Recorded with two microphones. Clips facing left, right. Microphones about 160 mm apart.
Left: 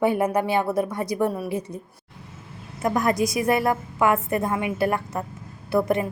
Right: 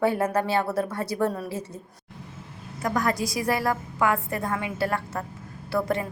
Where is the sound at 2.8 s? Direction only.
25° left (ahead or behind).